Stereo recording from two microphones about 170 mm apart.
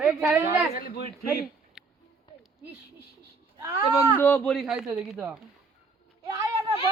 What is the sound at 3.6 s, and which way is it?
Speech, 20° right (ahead or behind).